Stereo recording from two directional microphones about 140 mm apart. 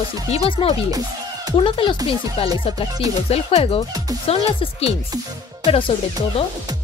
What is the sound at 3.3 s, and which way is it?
Speech, 45° left (ahead or behind).